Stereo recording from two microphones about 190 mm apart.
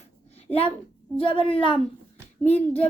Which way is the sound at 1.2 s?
30° left (ahead or behind).